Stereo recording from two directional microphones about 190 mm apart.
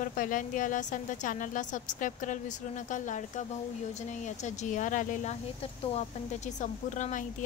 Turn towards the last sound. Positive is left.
turn(degrees=40)  # may be behind; listen again after turning